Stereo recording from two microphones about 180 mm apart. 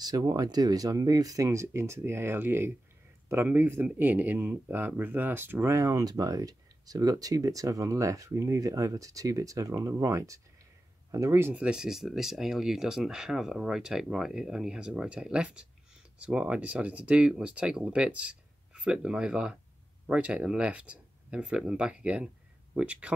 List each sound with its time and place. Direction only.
0.0 s speech: 20° right (ahead or behind)